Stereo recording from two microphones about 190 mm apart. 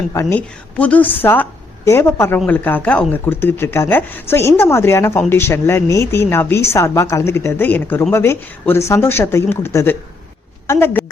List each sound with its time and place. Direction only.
0.1 s a woman's voice: 15° left (ahead or behind)